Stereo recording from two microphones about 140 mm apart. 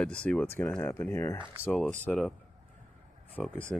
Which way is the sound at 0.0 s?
10° left (ahead or behind).